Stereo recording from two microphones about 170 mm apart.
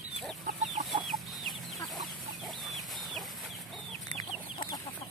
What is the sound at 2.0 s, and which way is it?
Chicken, centre (ahead or behind).